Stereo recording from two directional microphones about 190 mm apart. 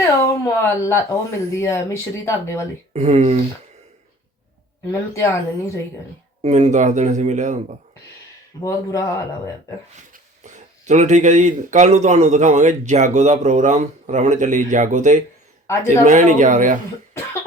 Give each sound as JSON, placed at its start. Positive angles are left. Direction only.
{"t": 0.0, "sound": "a sound", "side_deg": 15}
{"t": 1.5, "sound": "speech", "side_deg": 15}
{"t": 2.9, "sound": "speech", "side_deg": -35}
{"t": 4.9, "sound": "speech", "side_deg": 15}
{"t": 6.4, "sound": "speech", "side_deg": -35}
{"t": 8.6, "sound": "speech", "side_deg": 15}
{"t": 9.9, "sound": "speech", "side_deg": -40}
{"t": 15.6, "sound": "a man's voice", "side_deg": 15}
{"t": 16.0, "sound": "speech", "side_deg": -40}